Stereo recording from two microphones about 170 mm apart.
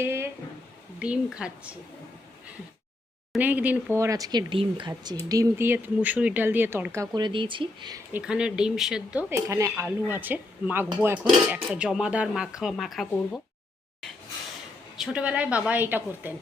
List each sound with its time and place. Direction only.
0.0 s a sound: 15° right (ahead or behind)
0.9 s speech: 5° right (ahead or behind)
3.3 s speech: 10° right (ahead or behind); by 8.0 s 25° right (ahead or behind)
8.1 s speech: 5° right (ahead or behind)
9.3 s speech: 20° right (ahead or behind); by 13.4 s centre (ahead or behind)
14.9 s speech: 5° right (ahead or behind)